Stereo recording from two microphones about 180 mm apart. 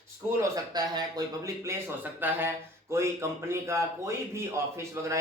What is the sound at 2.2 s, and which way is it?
A man's voice, 10° right (ahead or behind).